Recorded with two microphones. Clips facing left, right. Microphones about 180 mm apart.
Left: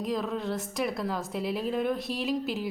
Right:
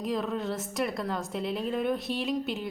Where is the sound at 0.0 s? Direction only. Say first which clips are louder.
Even; centre (ahead or behind).